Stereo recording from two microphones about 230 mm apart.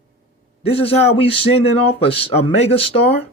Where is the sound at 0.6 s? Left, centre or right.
Left.